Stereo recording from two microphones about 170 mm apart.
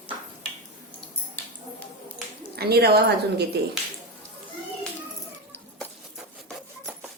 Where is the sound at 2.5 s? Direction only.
65° right (ahead or behind).